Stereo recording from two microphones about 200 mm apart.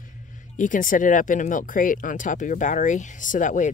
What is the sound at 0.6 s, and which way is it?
Speech, 40° left (ahead or behind).